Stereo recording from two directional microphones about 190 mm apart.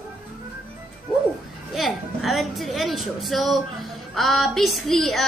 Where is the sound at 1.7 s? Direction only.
Centre (ahead or behind).